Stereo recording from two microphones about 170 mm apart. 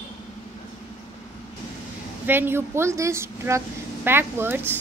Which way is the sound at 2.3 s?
15° right (ahead or behind).